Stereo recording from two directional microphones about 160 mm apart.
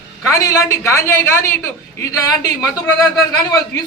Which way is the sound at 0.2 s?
20° left (ahead or behind).